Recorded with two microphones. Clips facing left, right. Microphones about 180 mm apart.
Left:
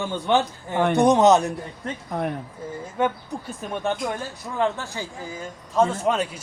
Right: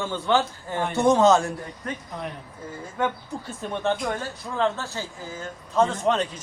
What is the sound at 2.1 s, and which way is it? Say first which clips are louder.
Speech: left 7 dB; 55° left (ahead or behind).